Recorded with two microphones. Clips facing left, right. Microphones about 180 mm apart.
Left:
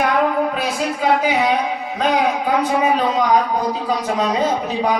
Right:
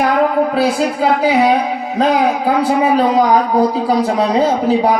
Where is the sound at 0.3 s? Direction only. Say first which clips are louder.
Right 6 dB; 35° right (ahead or behind).